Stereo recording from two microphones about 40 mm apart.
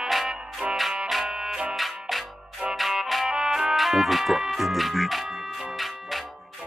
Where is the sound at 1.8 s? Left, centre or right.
Centre.